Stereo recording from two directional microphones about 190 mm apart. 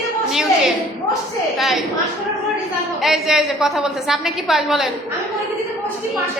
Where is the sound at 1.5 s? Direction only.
Centre (ahead or behind).